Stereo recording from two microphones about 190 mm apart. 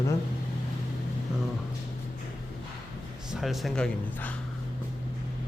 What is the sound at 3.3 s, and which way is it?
Speech, centre (ahead or behind).